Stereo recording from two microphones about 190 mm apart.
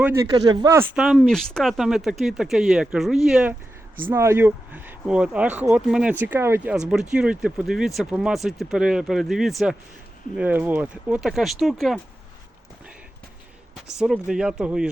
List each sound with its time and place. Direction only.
0.0 s speech: 15° right (ahead or behind)
0.9 s speech: 5° right (ahead or behind)
4.1 s speech: 15° right (ahead or behind)
14.0 s speech: 5° right (ahead or behind)